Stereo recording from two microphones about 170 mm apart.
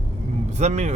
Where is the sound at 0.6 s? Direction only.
40° right (ahead or behind).